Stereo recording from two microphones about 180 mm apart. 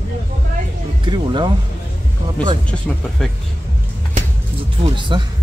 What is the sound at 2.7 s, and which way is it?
Speech, 5° left (ahead or behind).